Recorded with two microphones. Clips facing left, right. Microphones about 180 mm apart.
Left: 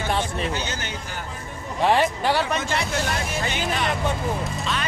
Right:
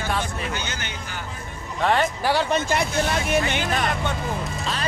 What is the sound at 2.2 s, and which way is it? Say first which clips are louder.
Speech: even; 10° right (ahead or behind).